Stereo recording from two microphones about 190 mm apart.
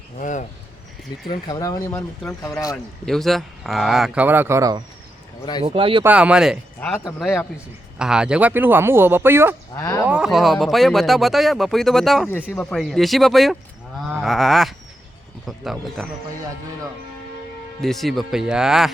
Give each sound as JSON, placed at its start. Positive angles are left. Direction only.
{"t": 0.2, "sound": "speech", "side_deg": 40}
{"t": 1.3, "sound": "speech", "side_deg": 20}
{"t": 2.7, "sound": "speech", "side_deg": 0}
{"t": 5.6, "sound": "speech", "side_deg": -30}
{"t": 6.0, "sound": "speech", "side_deg": -5}
{"t": 6.7, "sound": "speech", "side_deg": 10}
{"t": 7.9, "sound": "speech", "side_deg": -5}
{"t": 9.7, "sound": "speech", "side_deg": 15}
{"t": 10.1, "sound": "speech", "side_deg": -5}
{"t": 14.0, "sound": "sheep", "side_deg": -5}
{"t": 15.4, "sound": "speech", "side_deg": 0}
{"t": 17.7, "sound": "speech", "side_deg": 0}